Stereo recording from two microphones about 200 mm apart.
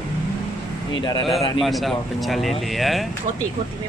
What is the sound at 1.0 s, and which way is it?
Speech, 20° left (ahead or behind).